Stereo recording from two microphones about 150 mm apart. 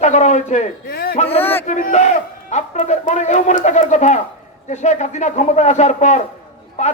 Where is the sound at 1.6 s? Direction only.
55° left (ahead or behind).